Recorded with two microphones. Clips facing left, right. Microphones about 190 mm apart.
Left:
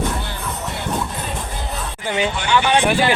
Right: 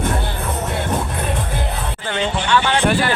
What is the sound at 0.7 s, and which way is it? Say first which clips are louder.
Music: even; 55° right (ahead or behind).